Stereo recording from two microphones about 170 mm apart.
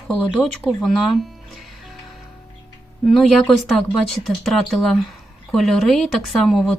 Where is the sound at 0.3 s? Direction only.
Centre (ahead or behind).